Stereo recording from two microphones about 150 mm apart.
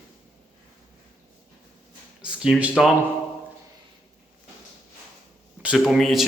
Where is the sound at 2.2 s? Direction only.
5° right (ahead or behind).